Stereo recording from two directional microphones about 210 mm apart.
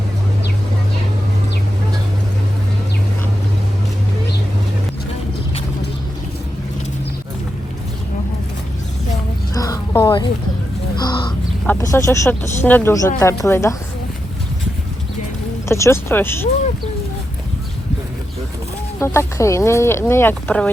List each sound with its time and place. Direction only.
9.6 s a sound: 15° left (ahead or behind)
10.9 s crow: 20° left (ahead or behind)
11.6 s speech: 10° left (ahead or behind)
15.7 s speech: 10° left (ahead or behind)
18.9 s speech: 10° left (ahead or behind)